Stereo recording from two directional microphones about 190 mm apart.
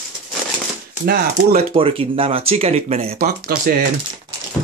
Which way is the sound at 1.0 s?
55° right (ahead or behind).